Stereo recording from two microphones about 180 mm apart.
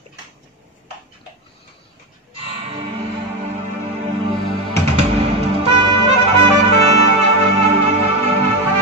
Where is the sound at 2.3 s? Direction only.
35° right (ahead or behind).